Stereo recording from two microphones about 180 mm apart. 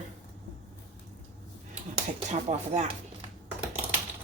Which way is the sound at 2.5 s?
40° right (ahead or behind).